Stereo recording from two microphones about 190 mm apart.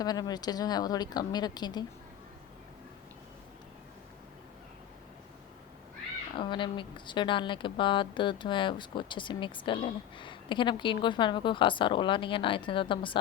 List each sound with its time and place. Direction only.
0.0 s speech: 20° left (ahead or behind)
6.3 s speech: 25° left (ahead or behind)